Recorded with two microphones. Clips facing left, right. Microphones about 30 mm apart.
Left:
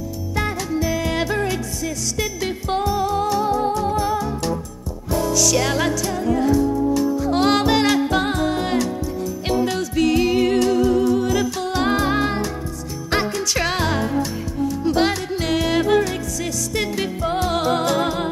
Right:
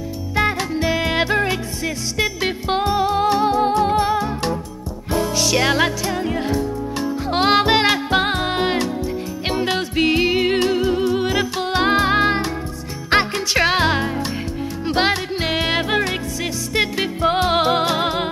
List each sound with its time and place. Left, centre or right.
0.4 s music: right